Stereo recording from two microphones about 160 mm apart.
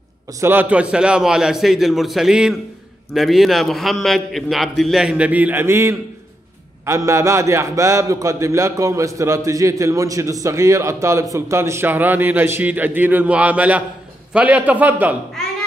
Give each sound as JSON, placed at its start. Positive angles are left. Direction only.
{"t": 0.4, "sound": "a man's voice", "side_deg": -10}